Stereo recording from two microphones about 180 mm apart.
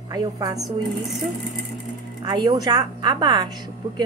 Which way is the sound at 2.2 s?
25° right (ahead or behind).